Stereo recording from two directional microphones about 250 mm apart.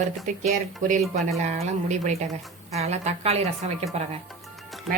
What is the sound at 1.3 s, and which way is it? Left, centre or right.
A woman's voice, right.